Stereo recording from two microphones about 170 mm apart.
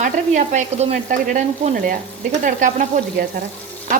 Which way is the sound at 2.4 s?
50° right (ahead or behind).